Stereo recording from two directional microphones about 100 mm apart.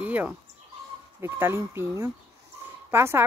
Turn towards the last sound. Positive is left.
turn(degrees=-25)  # may be behind; listen again after turning